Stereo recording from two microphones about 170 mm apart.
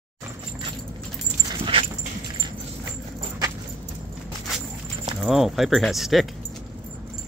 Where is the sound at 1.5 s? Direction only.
30° right (ahead or behind).